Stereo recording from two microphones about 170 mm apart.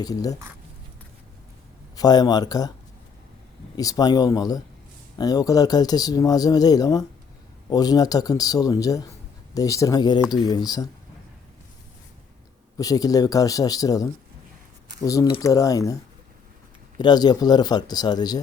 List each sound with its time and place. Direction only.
0.0 s speech: 20° left (ahead or behind)
2.0 s speech: 25° left (ahead or behind)
3.8 s speech: 20° left (ahead or behind)
12.7 s speech: 20° left (ahead or behind)
17.0 s speech: 25° left (ahead or behind)